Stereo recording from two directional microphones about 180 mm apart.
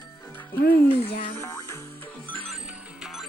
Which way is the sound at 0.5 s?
60° left (ahead or behind).